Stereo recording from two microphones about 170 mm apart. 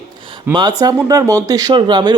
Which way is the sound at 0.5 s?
10° right (ahead or behind).